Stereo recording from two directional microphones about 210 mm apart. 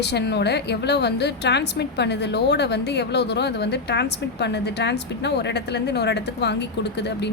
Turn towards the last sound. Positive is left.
turn(degrees=55)  # may be behind; listen again after turning